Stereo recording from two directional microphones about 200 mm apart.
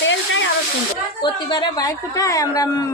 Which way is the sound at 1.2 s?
20° left (ahead or behind).